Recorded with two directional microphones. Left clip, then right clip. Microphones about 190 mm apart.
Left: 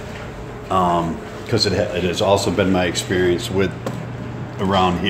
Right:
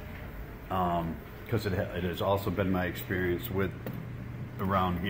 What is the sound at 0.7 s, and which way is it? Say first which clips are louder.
A man's voice: left 13 dB; 10° left (ahead or behind).